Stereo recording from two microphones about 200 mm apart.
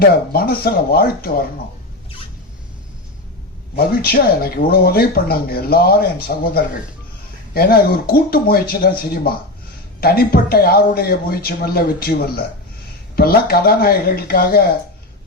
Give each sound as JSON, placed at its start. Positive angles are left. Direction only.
{"t": 0.0, "sound": "speech", "side_deg": 50}
{"t": 3.8, "sound": "speech", "side_deg": 50}